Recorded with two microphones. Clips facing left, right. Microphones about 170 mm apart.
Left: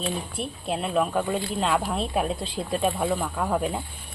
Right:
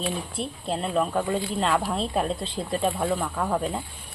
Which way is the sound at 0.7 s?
5° left (ahead or behind).